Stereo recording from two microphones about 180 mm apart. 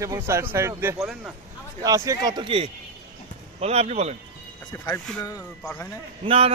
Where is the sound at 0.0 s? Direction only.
15° right (ahead or behind); by 4.2 s 35° right (ahead or behind).